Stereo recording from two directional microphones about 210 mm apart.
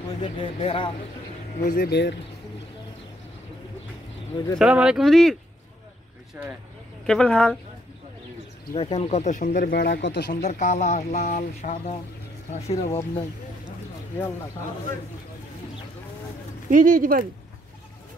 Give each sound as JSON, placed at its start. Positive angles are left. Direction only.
{"t": 0.2, "sound": "speech", "side_deg": 25}
{"t": 1.6, "sound": "speech", "side_deg": 45}
{"t": 4.6, "sound": "speech", "side_deg": -5}
{"t": 7.1, "sound": "speech", "side_deg": 5}
{"t": 8.7, "sound": "speech", "side_deg": 25}
{"t": 10.4, "sound": "speech", "side_deg": 35}
{"t": 16.7, "sound": "speech", "side_deg": -40}